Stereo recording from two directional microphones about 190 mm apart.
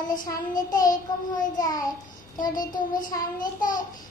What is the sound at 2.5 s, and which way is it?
Child singing, 45° left (ahead or behind).